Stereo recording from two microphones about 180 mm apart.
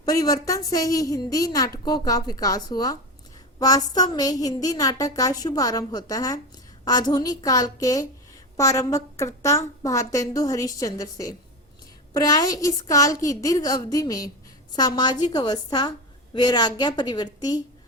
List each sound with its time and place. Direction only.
0.0 s a woman's voice: 20° left (ahead or behind)